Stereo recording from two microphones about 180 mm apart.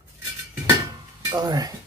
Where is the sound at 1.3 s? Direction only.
20° right (ahead or behind).